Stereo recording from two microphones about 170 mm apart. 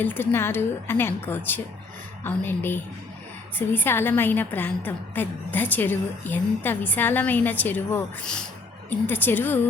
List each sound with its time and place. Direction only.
0.0 s a woman's voice: 10° left (ahead or behind)